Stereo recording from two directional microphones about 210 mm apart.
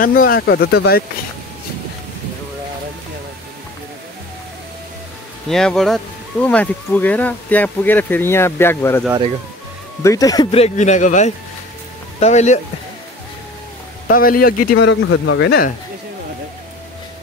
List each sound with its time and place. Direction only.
0.0 s speech: 40° left (ahead or behind)
5.5 s speech: centre (ahead or behind)
10.0 s speech: 15° left (ahead or behind); by 12.5 s 35° left (ahead or behind)
14.0 s speech: 45° left (ahead or behind)
14.8 s speech: 65° left (ahead or behind)